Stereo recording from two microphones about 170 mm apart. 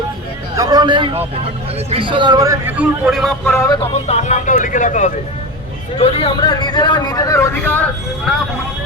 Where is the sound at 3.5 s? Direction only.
15° left (ahead or behind).